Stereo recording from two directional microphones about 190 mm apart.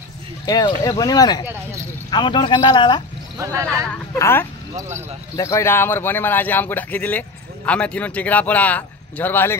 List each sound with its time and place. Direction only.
0.5 s speech: 20° left (ahead or behind)
3.3 s speech: 15° right (ahead or behind)
4.1 s speech: 15° left (ahead or behind)